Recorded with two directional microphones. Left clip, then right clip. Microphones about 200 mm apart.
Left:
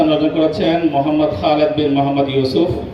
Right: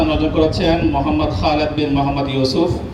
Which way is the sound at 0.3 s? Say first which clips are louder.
Left 1 dB; 30° right (ahead or behind).